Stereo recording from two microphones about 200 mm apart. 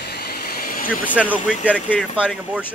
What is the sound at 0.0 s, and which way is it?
Vehicle, 50° left (ahead or behind).